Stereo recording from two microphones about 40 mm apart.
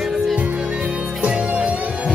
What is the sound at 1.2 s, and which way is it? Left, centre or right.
Music, right.